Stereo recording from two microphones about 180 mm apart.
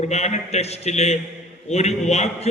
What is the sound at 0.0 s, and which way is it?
A man's voice, 40° left (ahead or behind).